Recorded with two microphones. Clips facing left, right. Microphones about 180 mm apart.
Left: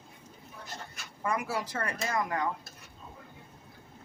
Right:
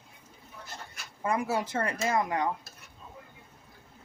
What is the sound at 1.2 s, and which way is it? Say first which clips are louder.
Speech: right 3 dB; 25° right (ahead or behind).